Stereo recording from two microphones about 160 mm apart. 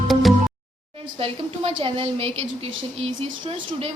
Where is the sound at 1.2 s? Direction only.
35° right (ahead or behind).